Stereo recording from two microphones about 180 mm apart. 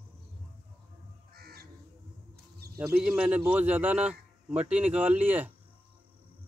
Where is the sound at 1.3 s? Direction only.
60° right (ahead or behind).